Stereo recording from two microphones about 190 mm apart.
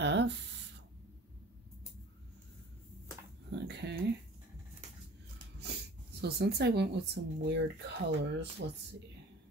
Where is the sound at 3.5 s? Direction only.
65° right (ahead or behind).